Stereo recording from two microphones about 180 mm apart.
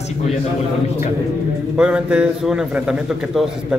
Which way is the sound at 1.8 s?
5° right (ahead or behind).